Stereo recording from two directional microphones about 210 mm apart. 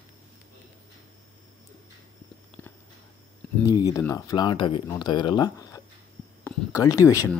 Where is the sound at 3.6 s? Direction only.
20° left (ahead or behind).